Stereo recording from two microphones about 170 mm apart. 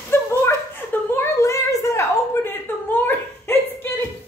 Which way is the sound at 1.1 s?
20° left (ahead or behind).